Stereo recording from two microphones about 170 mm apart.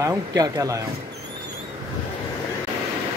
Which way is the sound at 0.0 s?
20° right (ahead or behind).